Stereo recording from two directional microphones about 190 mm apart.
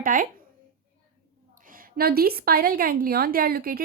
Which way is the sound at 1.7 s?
50° right (ahead or behind).